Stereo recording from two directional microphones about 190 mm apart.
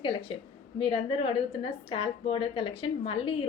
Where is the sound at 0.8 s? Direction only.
30° left (ahead or behind).